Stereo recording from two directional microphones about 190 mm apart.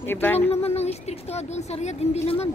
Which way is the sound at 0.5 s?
30° left (ahead or behind).